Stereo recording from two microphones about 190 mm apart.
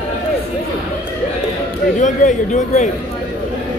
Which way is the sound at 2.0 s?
40° left (ahead or behind).